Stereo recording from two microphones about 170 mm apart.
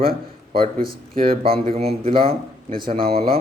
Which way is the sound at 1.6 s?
35° right (ahead or behind).